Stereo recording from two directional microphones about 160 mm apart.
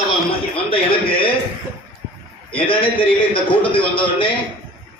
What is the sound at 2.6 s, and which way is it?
A man's voice, 35° left (ahead or behind).